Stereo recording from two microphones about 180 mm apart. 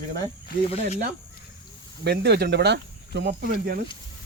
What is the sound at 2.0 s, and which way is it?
Speech, 70° right (ahead or behind).